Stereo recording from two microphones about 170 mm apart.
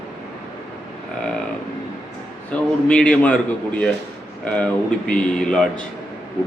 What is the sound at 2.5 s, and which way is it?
A man's voice, 5° left (ahead or behind).